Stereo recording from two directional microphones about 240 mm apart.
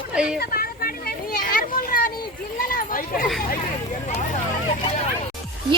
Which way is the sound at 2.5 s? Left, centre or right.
Left.